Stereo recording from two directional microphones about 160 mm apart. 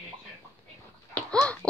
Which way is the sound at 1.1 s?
5° left (ahead or behind).